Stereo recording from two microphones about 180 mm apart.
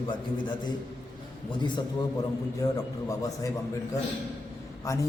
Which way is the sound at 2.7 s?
20° left (ahead or behind).